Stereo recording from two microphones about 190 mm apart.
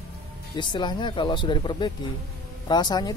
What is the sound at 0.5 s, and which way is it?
Speech, 25° left (ahead or behind).